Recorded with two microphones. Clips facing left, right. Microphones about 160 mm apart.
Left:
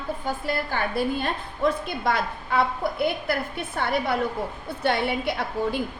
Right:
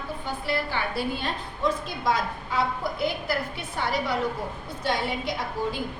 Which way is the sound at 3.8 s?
55° left (ahead or behind).